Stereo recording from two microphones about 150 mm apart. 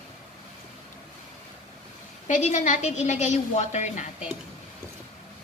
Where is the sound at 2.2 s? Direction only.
55° left (ahead or behind).